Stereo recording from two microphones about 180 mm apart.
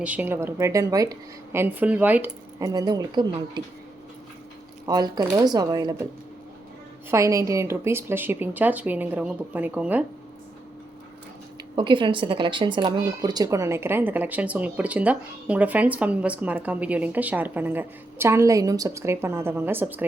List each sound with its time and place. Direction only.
0.0 s speech: 10° right (ahead or behind); by 3.6 s 25° right (ahead or behind)
4.9 s speech: 20° right (ahead or behind)
7.1 s speech: 15° right (ahead or behind)
11.8 s speech: 25° right (ahead or behind); by 20.1 s 10° right (ahead or behind)